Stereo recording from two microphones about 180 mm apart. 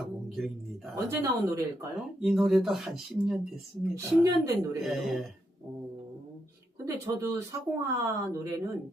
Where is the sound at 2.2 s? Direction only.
Centre (ahead or behind).